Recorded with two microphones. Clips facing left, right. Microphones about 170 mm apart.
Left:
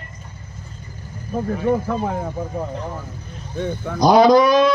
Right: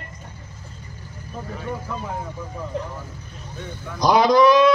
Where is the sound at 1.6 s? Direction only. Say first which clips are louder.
Left 10 dB; 55° left (ahead or behind).